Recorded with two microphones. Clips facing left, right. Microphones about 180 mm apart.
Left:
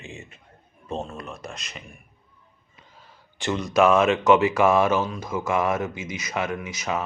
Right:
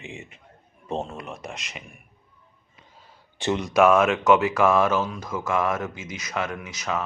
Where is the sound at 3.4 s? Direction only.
25° right (ahead or behind).